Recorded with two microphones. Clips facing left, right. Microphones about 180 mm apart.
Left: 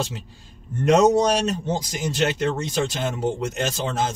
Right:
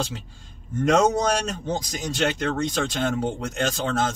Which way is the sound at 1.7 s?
5° left (ahead or behind).